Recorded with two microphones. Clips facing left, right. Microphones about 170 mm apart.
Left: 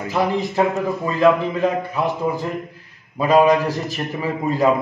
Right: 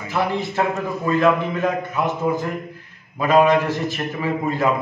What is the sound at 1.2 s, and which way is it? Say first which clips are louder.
A man's voice: left 5 dB; 30° left (ahead or behind).